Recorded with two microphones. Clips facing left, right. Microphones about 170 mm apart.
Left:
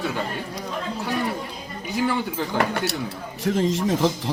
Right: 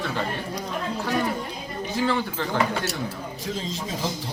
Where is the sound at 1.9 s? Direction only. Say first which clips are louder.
Left 1 dB; 15° left (ahead or behind).